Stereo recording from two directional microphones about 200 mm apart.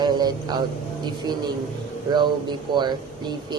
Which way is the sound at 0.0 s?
20° right (ahead or behind).